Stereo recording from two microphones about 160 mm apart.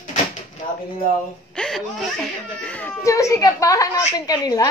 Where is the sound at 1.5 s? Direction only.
Centre (ahead or behind).